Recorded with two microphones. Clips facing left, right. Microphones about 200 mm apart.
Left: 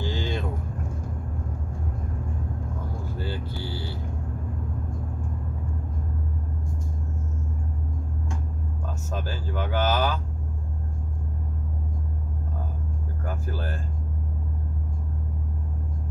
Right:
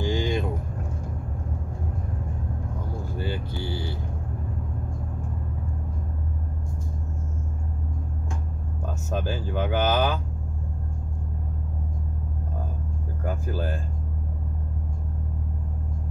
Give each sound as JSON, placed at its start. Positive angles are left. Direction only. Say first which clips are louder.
{"t": 0.0, "sound": "vehicle", "louder": "right 4 dB", "side_deg": -15}
{"t": 3.2, "sound": "vehicle", "louder": "right 3 dB", "side_deg": -15}
{"t": 9.1, "sound": "a sound", "louder": "right 4 dB", "side_deg": -20}
{"t": 13.2, "sound": "music", "louder": "right 4 dB", "side_deg": -15}